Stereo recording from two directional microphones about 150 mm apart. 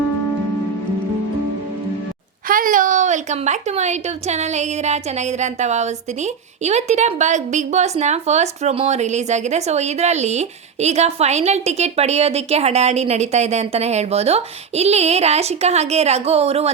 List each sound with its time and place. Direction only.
2.5 s a woman's voice: 65° right (ahead or behind); by 16.7 s 45° right (ahead or behind)